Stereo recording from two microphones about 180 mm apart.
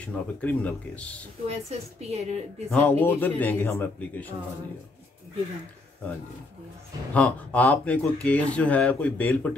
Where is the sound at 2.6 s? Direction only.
10° left (ahead or behind).